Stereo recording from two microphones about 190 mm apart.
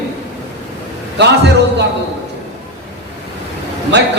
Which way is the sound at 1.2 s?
65° right (ahead or behind).